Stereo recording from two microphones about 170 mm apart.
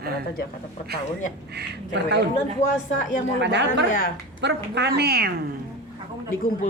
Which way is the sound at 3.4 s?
90° right.